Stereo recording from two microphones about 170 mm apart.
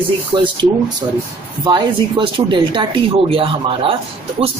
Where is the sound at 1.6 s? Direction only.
30° right (ahead or behind).